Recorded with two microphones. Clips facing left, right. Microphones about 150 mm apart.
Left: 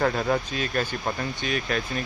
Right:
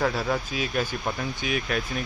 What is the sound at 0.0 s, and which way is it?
Speech, centre (ahead or behind).